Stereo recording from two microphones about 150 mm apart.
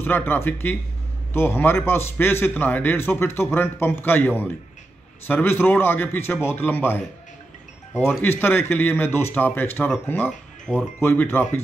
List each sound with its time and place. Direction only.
0.0 s speech: 15° left (ahead or behind)
8.2 s speech: 15° left (ahead or behind)